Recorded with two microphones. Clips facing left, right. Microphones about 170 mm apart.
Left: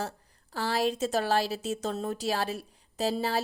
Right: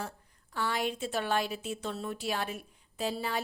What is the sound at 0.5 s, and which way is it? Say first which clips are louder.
A woman's voice: left 4 dB; 35° left (ahead or behind).